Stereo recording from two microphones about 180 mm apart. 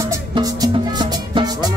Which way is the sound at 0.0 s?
20° right (ahead or behind).